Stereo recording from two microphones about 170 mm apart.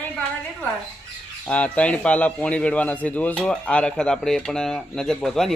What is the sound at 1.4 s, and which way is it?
A man's voice, 10° left (ahead or behind).